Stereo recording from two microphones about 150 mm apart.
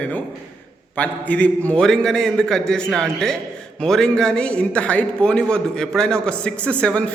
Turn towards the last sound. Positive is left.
turn(degrees=5)  # may be behind; listen again after turning